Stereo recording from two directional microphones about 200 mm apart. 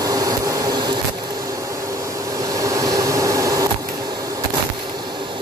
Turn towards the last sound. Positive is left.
turn(degrees=-15)  # may be behind; listen again after turning